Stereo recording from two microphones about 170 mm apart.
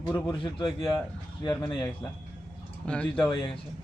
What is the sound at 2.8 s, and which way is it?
Speech, 5° left (ahead or behind).